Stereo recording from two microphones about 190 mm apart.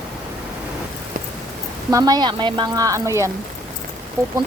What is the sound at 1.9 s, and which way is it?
A woman's voice, 20° right (ahead or behind).